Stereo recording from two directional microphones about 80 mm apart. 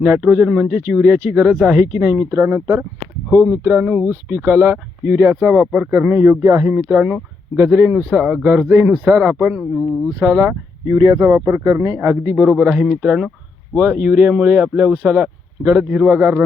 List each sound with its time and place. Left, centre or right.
0.0 s speech: right
0.5 s speech: centre
0.9 s speech: right
1.4 s speech: centre
1.6 s speech: centre
2.3 s a man's voice: right
3.3 s a man's voice: right
6.4 s speech: right
6.7 s a man's voice: right
7.9 s speech: centre
9.4 s speech: centre
10.8 s a man's voice: right
12.5 s speech: centre
13.7 s speech: right